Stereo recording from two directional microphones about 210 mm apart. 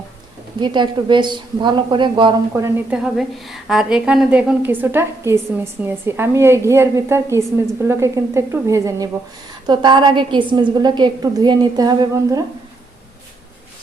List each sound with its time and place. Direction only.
0.6 s a woman's voice: 20° right (ahead or behind)
2.5 s a woman's voice: 10° right (ahead or behind)